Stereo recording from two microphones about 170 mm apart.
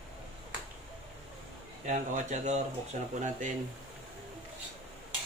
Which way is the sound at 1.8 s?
45° right (ahead or behind).